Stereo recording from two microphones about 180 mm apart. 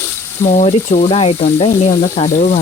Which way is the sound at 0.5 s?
45° left (ahead or behind).